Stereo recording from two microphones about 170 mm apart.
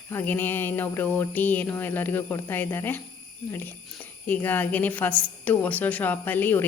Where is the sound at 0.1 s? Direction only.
10° left (ahead or behind).